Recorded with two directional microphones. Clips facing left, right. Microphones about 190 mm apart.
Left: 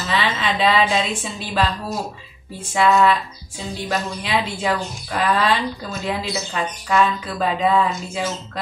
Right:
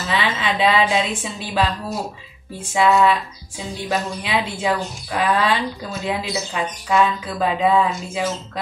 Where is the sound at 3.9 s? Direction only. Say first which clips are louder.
Right 1 dB; 15° right (ahead or behind).